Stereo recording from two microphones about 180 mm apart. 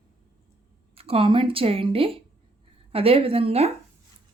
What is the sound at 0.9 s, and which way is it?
A woman's voice, 30° right (ahead or behind).